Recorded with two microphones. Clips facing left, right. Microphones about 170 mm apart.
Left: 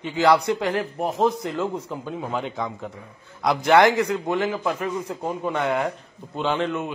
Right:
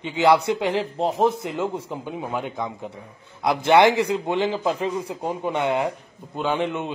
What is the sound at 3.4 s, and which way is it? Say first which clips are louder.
A man's voice: even; 20° right (ahead or behind).